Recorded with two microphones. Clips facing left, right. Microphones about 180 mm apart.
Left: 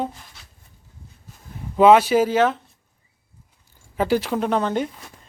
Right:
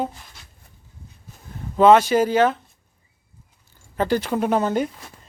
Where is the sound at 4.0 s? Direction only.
5° left (ahead or behind).